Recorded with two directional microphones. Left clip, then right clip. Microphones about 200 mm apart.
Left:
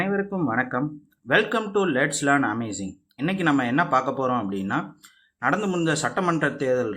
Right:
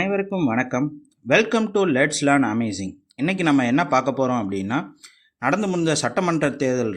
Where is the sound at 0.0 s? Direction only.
40° right (ahead or behind).